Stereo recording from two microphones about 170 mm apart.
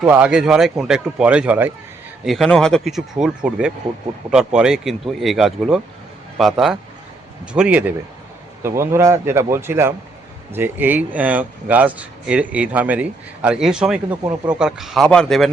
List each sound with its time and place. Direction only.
0.1 s speech: 5° right (ahead or behind)